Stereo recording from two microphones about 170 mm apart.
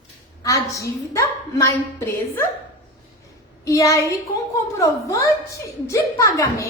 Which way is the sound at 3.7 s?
20° left (ahead or behind).